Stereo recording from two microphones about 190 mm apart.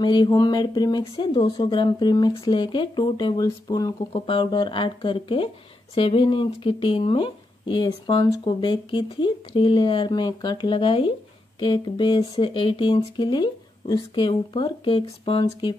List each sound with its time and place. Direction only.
0.0 s speech: 25° left (ahead or behind)